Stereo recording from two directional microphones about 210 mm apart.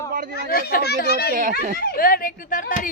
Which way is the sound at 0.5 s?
45° left (ahead or behind).